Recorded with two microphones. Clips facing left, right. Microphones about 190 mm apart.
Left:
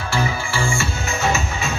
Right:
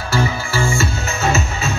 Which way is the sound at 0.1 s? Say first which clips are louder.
Right 3 dB; 40° right (ahead or behind).